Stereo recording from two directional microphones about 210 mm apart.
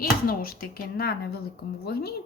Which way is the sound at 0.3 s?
45° left (ahead or behind).